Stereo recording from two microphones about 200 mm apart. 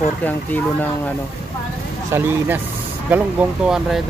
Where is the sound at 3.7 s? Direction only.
Centre (ahead or behind).